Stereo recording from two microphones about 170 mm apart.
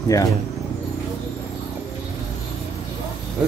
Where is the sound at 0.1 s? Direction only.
20° left (ahead or behind).